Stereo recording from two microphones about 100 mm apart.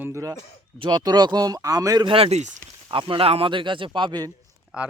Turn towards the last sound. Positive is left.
turn(degrees=-10)  # may be behind; listen again after turning